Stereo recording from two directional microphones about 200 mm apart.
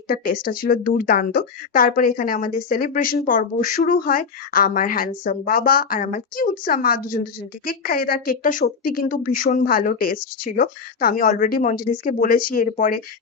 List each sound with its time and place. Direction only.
0.1 s speech: 45° left (ahead or behind)